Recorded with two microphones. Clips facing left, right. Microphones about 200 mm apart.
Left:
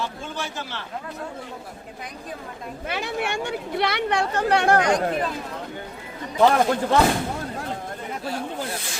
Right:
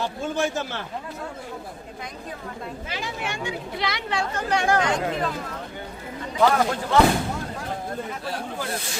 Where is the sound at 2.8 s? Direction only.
60° left (ahead or behind).